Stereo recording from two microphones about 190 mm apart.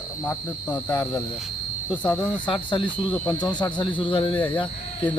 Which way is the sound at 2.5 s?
25° left (ahead or behind).